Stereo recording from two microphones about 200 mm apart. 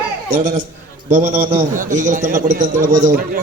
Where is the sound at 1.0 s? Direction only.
40° right (ahead or behind).